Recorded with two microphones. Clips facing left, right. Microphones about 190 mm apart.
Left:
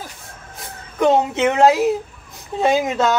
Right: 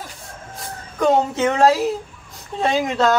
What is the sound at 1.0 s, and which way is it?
Speech, 20° left (ahead or behind).